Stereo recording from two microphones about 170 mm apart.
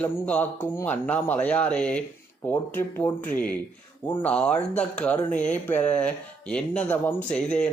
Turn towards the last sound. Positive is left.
turn(degrees=5)  # may be behind; listen again after turning